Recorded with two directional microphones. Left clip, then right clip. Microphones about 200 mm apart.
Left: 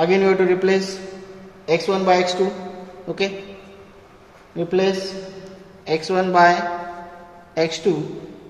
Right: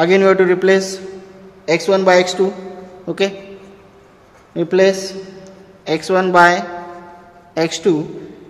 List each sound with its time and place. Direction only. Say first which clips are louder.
0.0 s a man's voice: right 5 dB; 45° right (ahead or behind)
4.6 s a man's voice: right 6 dB; 50° right (ahead or behind)